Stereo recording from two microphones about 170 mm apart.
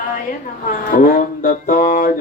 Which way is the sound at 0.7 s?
55° left (ahead or behind).